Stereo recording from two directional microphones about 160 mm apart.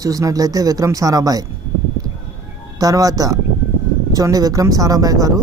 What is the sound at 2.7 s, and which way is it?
A man's voice, 20° right (ahead or behind).